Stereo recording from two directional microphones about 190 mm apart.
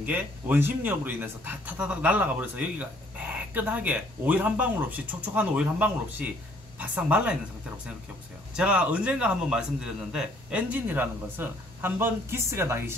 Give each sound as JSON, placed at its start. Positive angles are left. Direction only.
{"t": 0.0, "sound": "speech", "side_deg": -10}
{"t": 8.5, "sound": "speech", "side_deg": -5}